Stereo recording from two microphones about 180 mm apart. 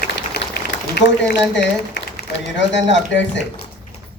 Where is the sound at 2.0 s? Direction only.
80° left.